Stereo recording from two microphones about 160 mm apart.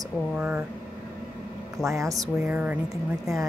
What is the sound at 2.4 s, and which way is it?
Speech, 10° right (ahead or behind).